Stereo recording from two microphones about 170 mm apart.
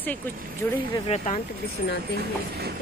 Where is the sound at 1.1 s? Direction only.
40° left (ahead or behind).